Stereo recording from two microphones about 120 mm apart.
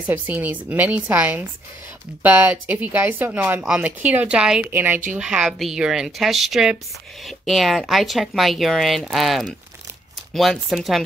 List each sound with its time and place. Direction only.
0.0 s speech: 15° right (ahead or behind)